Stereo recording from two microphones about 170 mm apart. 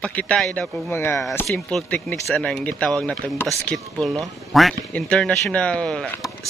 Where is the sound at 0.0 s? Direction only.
5° left (ahead or behind).